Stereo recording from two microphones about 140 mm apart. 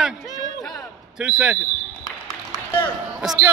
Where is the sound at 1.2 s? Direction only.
5° right (ahead or behind).